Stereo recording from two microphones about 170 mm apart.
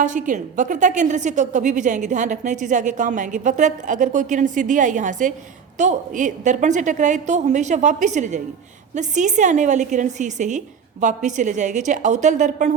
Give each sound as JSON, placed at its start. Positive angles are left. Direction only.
{"t": 0.0, "sound": "a woman's voice", "side_deg": -50}